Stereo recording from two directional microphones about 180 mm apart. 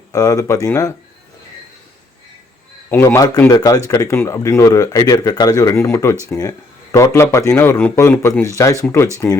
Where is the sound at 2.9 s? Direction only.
15° left (ahead or behind).